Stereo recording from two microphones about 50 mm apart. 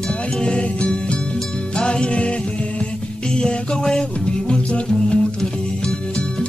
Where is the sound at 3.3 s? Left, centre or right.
Centre.